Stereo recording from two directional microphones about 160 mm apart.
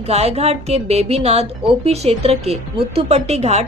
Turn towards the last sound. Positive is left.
turn(degrees=-45)  # may be behind; listen again after turning